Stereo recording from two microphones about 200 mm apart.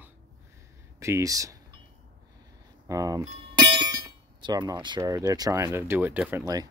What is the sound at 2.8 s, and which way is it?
Speech, 15° right (ahead or behind).